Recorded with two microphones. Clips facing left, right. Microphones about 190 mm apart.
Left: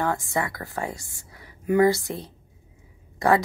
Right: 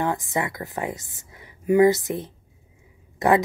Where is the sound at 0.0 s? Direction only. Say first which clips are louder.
Right 1 dB; 20° right (ahead or behind).